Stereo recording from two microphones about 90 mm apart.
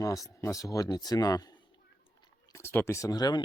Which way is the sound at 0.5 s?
40° left (ahead or behind).